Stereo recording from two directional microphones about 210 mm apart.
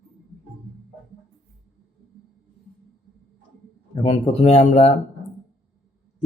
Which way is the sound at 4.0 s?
30° left (ahead or behind).